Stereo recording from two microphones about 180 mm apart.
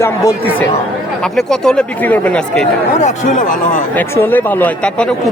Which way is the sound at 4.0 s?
10° left (ahead or behind).